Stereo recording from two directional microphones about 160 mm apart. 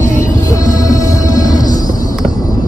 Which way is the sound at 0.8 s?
20° left (ahead or behind).